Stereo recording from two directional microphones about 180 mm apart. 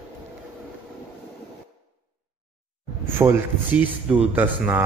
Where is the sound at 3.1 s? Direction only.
15° right (ahead or behind).